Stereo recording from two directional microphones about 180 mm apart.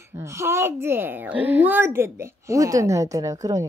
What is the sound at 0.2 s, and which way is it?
A child's voice, 15° right (ahead or behind).